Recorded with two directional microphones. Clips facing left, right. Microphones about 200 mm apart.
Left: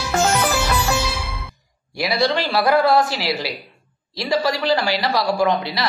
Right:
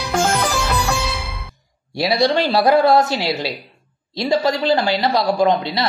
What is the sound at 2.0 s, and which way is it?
Speech, 25° right (ahead or behind).